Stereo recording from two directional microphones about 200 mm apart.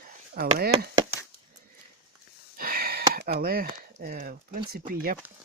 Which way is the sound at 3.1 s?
50° right (ahead or behind).